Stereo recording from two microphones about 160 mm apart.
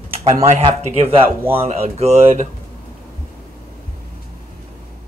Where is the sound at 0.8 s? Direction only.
40° right (ahead or behind).